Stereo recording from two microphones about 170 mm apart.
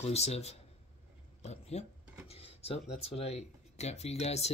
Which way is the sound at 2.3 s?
35° left (ahead or behind).